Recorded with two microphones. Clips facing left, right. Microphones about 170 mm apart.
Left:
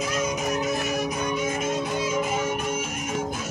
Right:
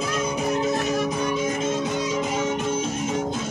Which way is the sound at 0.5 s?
25° right (ahead or behind).